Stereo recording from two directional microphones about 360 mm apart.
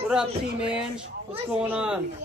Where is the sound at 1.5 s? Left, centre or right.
Centre.